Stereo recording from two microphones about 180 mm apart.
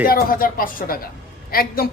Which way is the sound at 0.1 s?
55° left (ahead or behind).